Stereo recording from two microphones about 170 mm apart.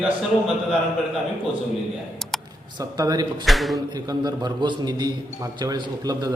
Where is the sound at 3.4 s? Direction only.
Centre (ahead or behind).